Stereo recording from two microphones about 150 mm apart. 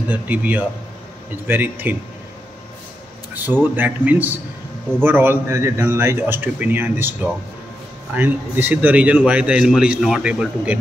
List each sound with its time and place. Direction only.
0.1 s a man's voice: 10° right (ahead or behind)
3.4 s a man's voice: 10° right (ahead or behind)